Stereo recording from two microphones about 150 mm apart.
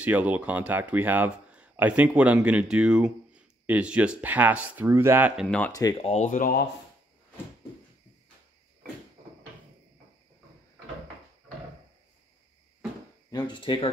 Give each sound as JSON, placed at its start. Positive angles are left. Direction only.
{"t": 0.0, "sound": "speech", "side_deg": -10}
{"t": 5.7, "sound": "speech", "side_deg": 25}
{"t": 6.0, "sound": "speech", "side_deg": 55}
{"t": 13.3, "sound": "speech", "side_deg": 30}